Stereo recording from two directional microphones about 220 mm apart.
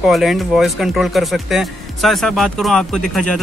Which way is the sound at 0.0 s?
Centre (ahead or behind).